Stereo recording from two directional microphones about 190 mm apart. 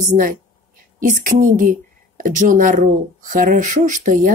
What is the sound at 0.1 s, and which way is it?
Speech, 45° right (ahead or behind).